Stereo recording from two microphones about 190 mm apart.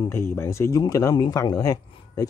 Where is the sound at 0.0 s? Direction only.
15° left (ahead or behind).